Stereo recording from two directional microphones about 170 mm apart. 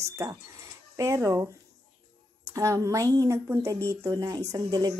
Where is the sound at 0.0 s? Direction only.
15° right (ahead or behind).